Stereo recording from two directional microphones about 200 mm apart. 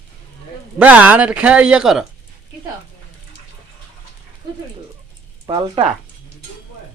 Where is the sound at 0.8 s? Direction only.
10° right (ahead or behind).